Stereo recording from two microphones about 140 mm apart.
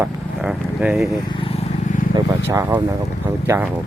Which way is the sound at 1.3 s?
40° left (ahead or behind).